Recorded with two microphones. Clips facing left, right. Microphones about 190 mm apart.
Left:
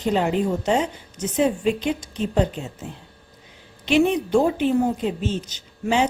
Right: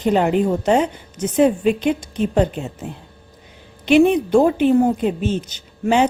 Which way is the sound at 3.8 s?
55° right (ahead or behind).